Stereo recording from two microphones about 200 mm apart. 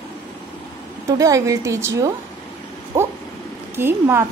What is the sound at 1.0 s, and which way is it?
A woman's voice, 15° right (ahead or behind).